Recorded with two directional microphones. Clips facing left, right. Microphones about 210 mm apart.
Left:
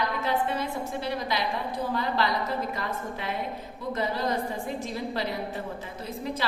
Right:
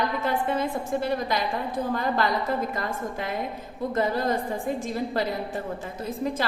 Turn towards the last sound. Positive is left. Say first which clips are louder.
# right 4 dB
turn(degrees=-50)  # may be behind; listen again after turning